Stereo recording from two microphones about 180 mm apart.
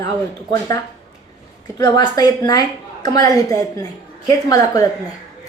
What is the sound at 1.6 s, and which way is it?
A woman's voice, 20° left (ahead or behind).